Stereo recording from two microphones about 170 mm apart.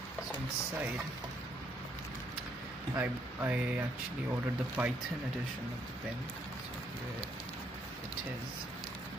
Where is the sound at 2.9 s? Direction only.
10° right (ahead or behind).